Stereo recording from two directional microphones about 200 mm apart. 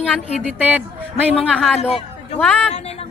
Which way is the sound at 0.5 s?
5° right (ahead or behind).